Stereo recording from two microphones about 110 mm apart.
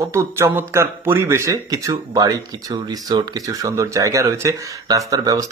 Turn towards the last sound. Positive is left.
turn(degrees=-35)  # may be behind; listen again after turning